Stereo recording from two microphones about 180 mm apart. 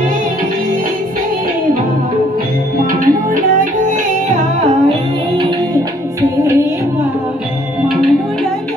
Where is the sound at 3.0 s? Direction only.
45° right (ahead or behind).